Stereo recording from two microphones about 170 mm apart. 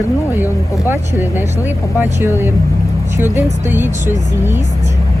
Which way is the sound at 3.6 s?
15° right (ahead or behind).